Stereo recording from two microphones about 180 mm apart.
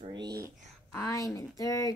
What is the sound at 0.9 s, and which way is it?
Speech, 15° left (ahead or behind).